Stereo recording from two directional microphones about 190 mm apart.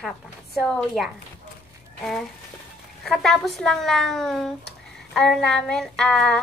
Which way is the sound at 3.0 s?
Centre (ahead or behind).